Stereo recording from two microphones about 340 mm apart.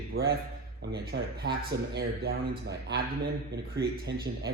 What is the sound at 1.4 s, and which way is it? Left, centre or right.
Speech, right.